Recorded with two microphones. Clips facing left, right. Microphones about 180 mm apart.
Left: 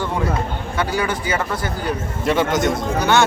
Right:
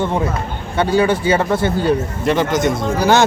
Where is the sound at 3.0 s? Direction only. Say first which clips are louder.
Right 3 dB; 35° right (ahead or behind).